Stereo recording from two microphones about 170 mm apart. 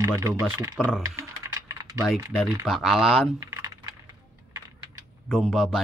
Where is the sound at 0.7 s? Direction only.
5° left (ahead or behind).